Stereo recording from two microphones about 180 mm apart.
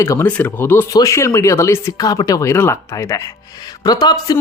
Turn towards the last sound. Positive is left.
turn(degrees=20)  # may be behind; listen again after turning